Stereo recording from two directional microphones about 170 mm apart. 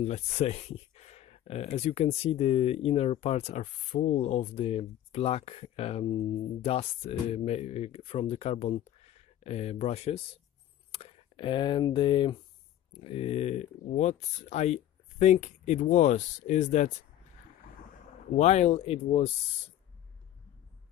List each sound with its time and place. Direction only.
0.0 s speech: 40° left (ahead or behind)
18.3 s speech: 40° left (ahead or behind)